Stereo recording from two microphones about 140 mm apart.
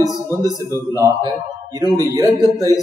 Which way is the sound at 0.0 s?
25° right (ahead or behind).